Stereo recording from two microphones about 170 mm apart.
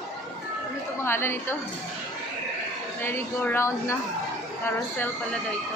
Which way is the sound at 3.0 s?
15° left (ahead or behind).